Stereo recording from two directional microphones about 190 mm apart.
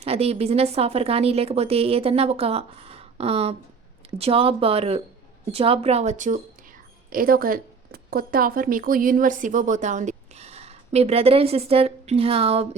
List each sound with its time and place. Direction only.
0.0 s a woman's voice: 30° right (ahead or behind)